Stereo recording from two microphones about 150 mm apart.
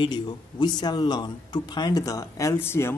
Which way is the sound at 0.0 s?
30° left (ahead or behind).